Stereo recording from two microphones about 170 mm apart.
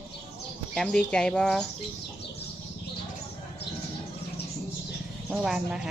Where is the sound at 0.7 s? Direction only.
5° left (ahead or behind).